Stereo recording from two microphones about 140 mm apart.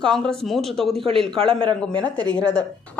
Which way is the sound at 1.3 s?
40° right (ahead or behind).